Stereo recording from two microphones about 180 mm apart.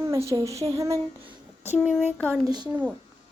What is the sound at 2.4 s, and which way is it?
Speech, 25° right (ahead or behind).